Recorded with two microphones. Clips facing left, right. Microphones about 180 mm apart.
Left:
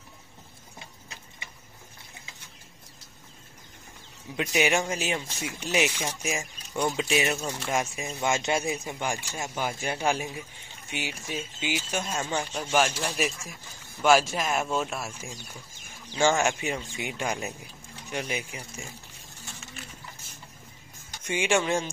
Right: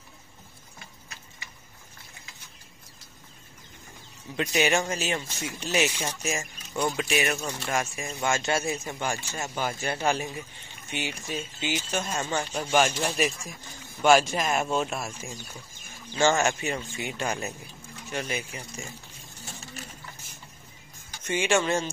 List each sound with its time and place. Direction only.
4.4 s speech: 10° left (ahead or behind)
7.0 s speech: 20° left (ahead or behind); by 15.0 s centre (ahead or behind)
16.2 s speech: 10° left (ahead or behind)
21.2 s speech: 10° left (ahead or behind)